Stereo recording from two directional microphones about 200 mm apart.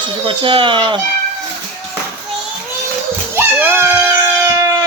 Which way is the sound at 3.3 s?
10° right (ahead or behind).